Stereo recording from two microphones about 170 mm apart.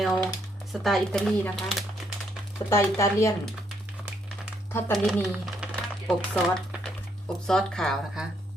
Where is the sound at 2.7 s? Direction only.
15° left (ahead or behind).